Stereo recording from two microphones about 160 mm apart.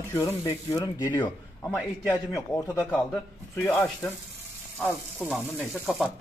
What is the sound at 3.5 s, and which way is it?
Speech, 15° left (ahead or behind).